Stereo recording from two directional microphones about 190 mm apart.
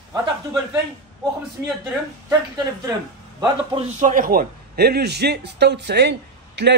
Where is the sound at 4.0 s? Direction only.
45° right (ahead or behind).